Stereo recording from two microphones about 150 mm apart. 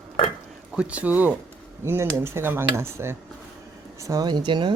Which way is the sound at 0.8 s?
10° right (ahead or behind).